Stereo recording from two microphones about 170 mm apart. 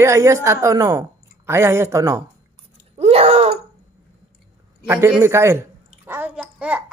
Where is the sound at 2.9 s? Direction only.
40° right (ahead or behind).